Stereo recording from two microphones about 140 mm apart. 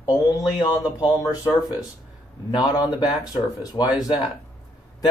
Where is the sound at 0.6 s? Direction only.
30° left (ahead or behind).